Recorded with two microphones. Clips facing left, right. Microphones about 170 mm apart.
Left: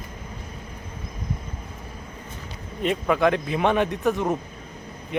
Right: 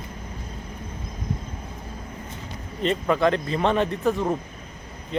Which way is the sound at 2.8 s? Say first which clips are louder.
Even; 5° left (ahead or behind).